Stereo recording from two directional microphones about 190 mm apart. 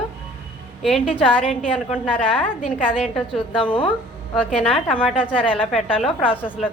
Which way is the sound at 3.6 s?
25° left (ahead or behind).